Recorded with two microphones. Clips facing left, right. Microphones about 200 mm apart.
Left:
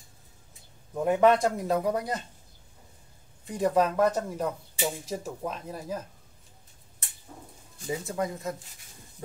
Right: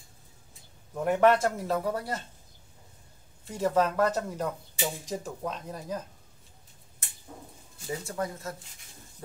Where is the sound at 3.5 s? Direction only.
15° left (ahead or behind).